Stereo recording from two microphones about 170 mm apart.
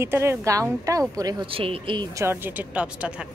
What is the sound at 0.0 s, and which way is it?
A woman's voice, 15° right (ahead or behind).